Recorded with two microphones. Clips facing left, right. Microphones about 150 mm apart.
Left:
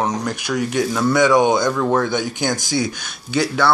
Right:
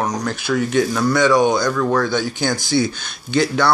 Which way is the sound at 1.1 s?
20° left (ahead or behind).